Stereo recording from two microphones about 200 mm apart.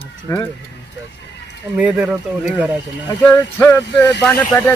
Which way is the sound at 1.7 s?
5° right (ahead or behind).